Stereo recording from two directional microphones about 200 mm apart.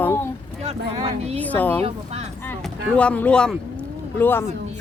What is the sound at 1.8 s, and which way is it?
Speech, 30° right (ahead or behind).